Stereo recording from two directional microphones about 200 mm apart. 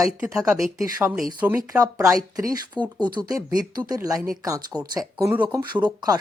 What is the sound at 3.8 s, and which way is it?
Speech, 20° right (ahead or behind).